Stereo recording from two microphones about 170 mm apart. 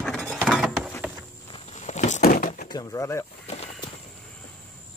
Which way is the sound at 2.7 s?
25° left (ahead or behind).